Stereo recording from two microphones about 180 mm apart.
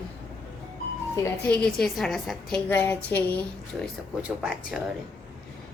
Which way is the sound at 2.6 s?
10° left (ahead or behind).